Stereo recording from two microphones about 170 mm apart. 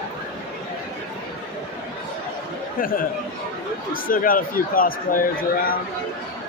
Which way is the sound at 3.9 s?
55° left (ahead or behind).